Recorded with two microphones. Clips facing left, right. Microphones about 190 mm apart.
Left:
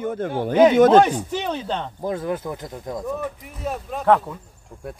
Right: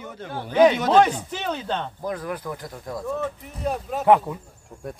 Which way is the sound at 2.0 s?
25° left (ahead or behind).